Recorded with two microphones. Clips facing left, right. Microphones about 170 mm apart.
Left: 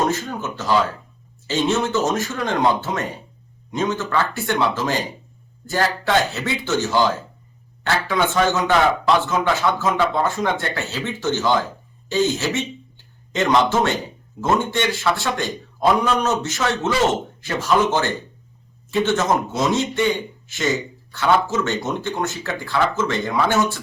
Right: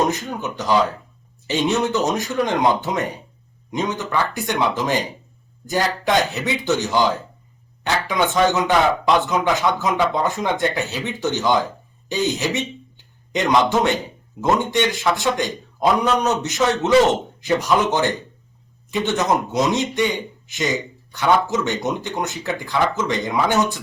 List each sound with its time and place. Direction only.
0.1 s speech: 15° right (ahead or behind)